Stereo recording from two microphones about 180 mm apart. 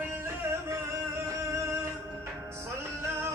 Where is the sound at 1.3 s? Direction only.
15° right (ahead or behind).